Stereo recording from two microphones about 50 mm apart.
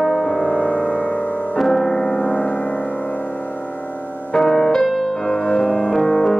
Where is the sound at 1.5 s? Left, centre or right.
Centre.